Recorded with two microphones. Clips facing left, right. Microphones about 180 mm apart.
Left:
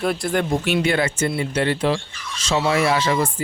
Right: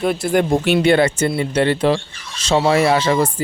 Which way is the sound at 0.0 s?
5° right (ahead or behind).